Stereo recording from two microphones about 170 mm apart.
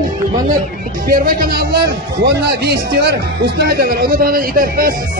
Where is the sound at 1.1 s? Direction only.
55° right (ahead or behind).